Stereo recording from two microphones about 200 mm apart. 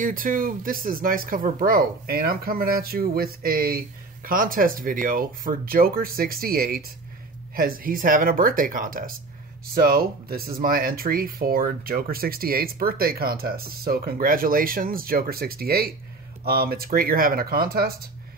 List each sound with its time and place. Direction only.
0.0 s speech: 45° right (ahead or behind)